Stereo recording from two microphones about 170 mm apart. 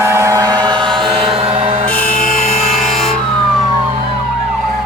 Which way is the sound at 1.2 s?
35° right (ahead or behind).